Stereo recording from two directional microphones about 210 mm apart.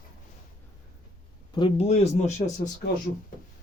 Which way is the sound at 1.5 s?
25° left (ahead or behind).